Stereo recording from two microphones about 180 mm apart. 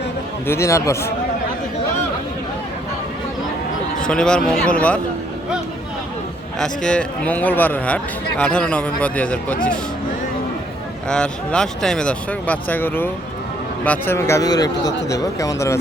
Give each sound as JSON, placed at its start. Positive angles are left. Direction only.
{"t": 0.4, "sound": "a man's voice", "side_deg": 15}
{"t": 4.0, "sound": "speech", "side_deg": 5}
{"t": 6.6, "sound": "a man's voice", "side_deg": 5}
{"t": 11.1, "sound": "a man's voice", "side_deg": 5}